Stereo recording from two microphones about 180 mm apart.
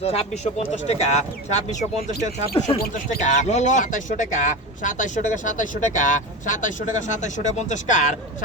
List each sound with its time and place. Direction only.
0.0 s speech: 35° left (ahead or behind)
3.2 s speech: 40° left (ahead or behind)